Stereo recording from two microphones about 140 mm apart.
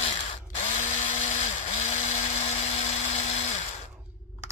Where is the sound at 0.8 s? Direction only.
60° left (ahead or behind).